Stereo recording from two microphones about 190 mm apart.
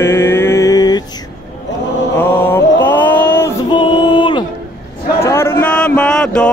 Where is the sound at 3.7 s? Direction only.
25° left (ahead or behind).